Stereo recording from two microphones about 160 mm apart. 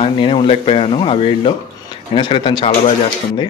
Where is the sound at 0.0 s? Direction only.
35° left (ahead or behind).